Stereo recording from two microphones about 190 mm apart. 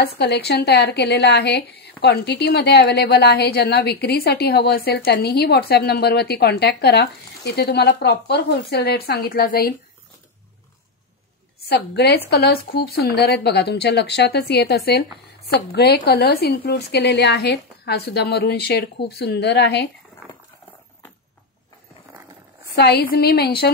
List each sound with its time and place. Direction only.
0.0 s a woman's voice: 60° left (ahead or behind)
11.7 s speech: 60° left (ahead or behind)
22.8 s speech: 55° left (ahead or behind)